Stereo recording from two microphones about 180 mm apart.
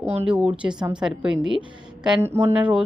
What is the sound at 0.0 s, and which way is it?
Speech, 35° right (ahead or behind).